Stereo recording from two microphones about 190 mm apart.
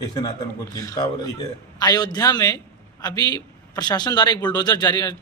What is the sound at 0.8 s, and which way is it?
A man's voice, 20° left (ahead or behind).